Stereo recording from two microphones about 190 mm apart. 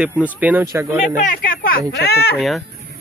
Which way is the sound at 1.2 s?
45° left (ahead or behind).